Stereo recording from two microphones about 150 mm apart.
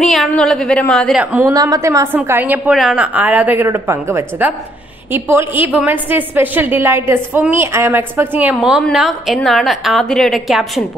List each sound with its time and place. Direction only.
0.0 s a woman's voice: 5° left (ahead or behind)
1.2 s a woman's voice: 10° right (ahead or behind)
1.5 s a woman's voice: 25° right (ahead or behind)
2.7 s a woman's voice: centre (ahead or behind)